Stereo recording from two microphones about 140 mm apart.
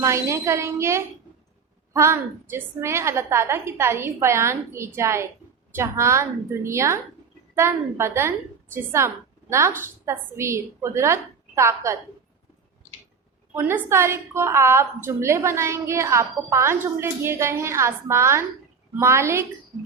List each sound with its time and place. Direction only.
0.0 s a woman's voice: 20° right (ahead or behind)
13.6 s a woman's voice: 15° right (ahead or behind)